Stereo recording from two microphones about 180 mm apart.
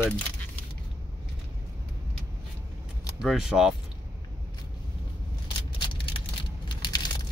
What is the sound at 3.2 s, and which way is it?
Speech, centre (ahead or behind).